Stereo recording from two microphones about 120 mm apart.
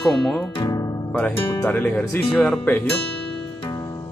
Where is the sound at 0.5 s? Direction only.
35° left (ahead or behind).